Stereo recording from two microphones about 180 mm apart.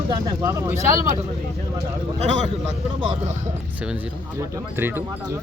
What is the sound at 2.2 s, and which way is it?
Speech, 40° right (ahead or behind).